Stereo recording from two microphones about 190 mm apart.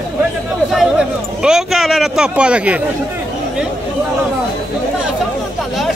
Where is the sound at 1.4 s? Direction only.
Centre (ahead or behind).